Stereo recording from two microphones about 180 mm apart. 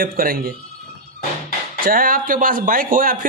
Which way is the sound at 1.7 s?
50° right (ahead or behind).